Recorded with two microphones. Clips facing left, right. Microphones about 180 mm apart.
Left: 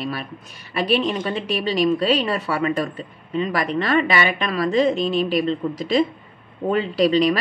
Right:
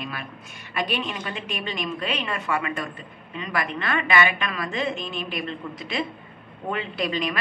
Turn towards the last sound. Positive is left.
turn(degrees=35)  # may be behind; listen again after turning